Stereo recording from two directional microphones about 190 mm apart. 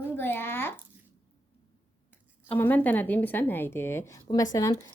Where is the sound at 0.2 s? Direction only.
10° left (ahead or behind).